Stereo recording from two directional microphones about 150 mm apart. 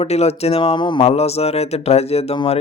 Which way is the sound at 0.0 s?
45° left (ahead or behind).